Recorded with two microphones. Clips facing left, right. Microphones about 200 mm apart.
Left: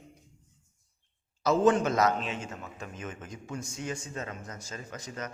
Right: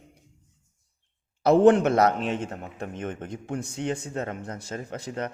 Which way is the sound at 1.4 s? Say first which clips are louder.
Right 7 dB; 60° right (ahead or behind).